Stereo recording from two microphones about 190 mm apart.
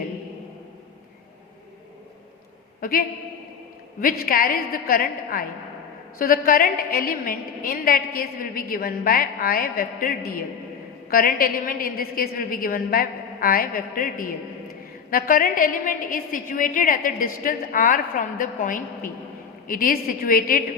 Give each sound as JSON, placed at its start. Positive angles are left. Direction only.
{"t": 2.8, "sound": "a woman's voice", "side_deg": 50}
{"t": 4.0, "sound": "a woman's voice", "side_deg": 50}